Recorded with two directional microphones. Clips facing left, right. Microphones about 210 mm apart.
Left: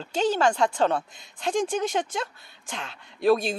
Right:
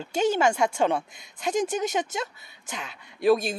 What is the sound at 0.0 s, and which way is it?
Speech, 10° right (ahead or behind).